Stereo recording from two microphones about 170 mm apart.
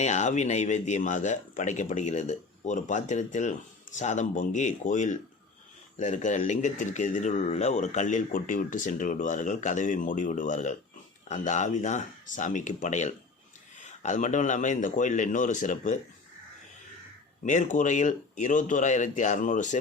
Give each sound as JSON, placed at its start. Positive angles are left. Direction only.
{"t": 0.0, "sound": "speech", "side_deg": 45}
{"t": 17.4, "sound": "speech", "side_deg": 50}